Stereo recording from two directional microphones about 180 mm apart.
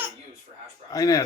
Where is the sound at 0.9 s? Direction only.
20° left (ahead or behind).